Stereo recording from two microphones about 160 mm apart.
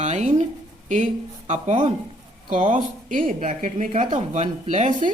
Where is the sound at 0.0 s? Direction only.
45° right (ahead or behind).